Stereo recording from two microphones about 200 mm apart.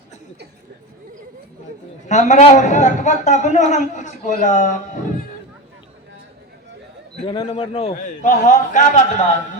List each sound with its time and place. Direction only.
2.0 s a man's voice: 35° left (ahead or behind)
7.3 s a man's voice: 25° left (ahead or behind)